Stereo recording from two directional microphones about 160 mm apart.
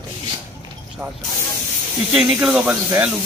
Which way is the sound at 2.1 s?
5° right (ahead or behind).